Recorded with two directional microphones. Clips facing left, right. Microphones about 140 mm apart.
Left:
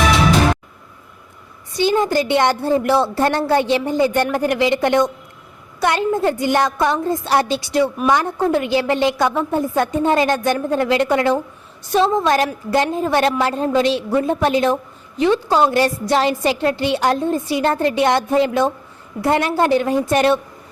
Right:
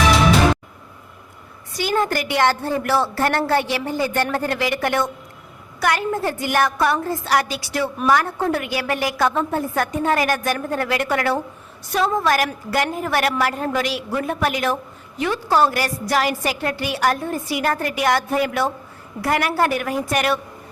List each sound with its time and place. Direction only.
1.7 s a woman's voice: 25° left (ahead or behind)